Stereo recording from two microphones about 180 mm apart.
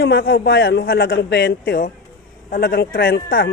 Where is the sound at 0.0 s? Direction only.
90° left.